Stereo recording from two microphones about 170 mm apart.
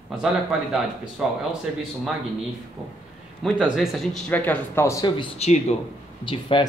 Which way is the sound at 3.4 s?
Centre (ahead or behind).